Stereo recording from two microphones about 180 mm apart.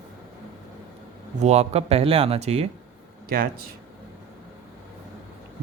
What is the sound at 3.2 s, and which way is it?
Speech, 55° right (ahead or behind).